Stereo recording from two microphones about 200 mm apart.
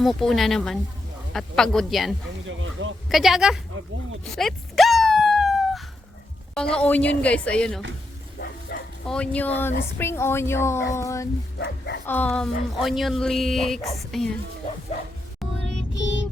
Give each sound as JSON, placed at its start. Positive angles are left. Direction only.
{"t": 0.0, "sound": "speech", "side_deg": 0}
{"t": 2.5, "sound": "speech", "side_deg": -75}
{"t": 3.1, "sound": "speech", "side_deg": 0}
{"t": 4.4, "sound": "a sound", "side_deg": 0}
{"t": 6.7, "sound": "speech", "side_deg": 5}
{"t": 8.7, "sound": "bow-wow", "side_deg": 50}
{"t": 9.0, "sound": "speech", "side_deg": 5}